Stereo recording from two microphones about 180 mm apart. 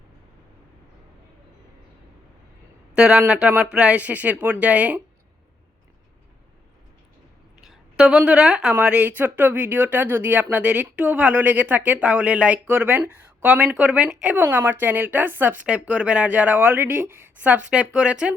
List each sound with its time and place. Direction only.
2.9 s speech: 5° right (ahead or behind)
7.6 s speech: 5° right (ahead or behind)